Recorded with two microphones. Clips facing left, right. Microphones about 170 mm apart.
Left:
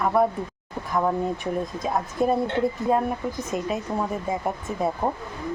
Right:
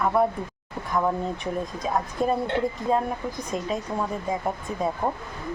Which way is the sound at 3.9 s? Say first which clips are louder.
Left 2 dB; 20° left (ahead or behind).